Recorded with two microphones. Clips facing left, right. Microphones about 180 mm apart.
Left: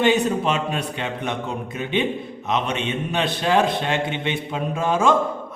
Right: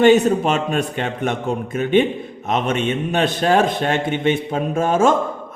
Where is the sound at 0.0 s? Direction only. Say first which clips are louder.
Right 6 dB; 45° right (ahead or behind).